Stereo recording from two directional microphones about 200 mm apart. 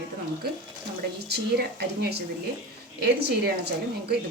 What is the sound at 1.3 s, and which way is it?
Speech, 55° right (ahead or behind).